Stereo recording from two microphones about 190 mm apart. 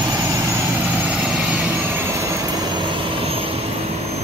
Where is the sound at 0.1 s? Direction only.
15° right (ahead or behind); by 4.2 s 30° right (ahead or behind).